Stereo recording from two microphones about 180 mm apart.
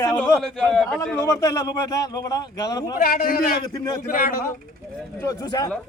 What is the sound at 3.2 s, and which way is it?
Speech, 50° left (ahead or behind).